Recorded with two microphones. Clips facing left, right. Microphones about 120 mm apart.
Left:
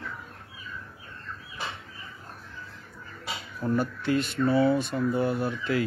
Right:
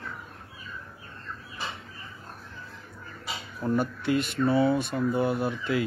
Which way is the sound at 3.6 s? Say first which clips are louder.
Even; 15° right (ahead or behind).